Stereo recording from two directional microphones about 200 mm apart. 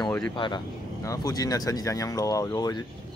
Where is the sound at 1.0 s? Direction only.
15° left (ahead or behind).